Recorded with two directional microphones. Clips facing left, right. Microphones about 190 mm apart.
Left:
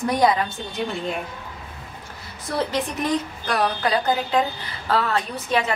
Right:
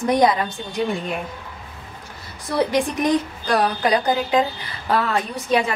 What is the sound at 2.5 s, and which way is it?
Speech, 15° right (ahead or behind).